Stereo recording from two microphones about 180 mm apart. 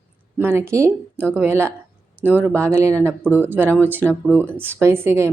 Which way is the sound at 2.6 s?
15° right (ahead or behind).